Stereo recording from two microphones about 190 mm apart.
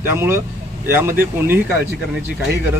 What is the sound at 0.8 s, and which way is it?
Speech, 10° right (ahead or behind).